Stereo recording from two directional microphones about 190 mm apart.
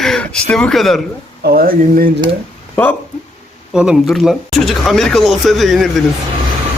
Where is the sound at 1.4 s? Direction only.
50° right (ahead or behind).